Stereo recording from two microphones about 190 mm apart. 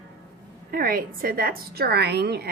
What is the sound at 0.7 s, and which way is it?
A woman's voice, 50° right (ahead or behind).